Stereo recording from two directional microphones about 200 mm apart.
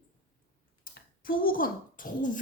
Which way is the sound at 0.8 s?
45° left (ahead or behind).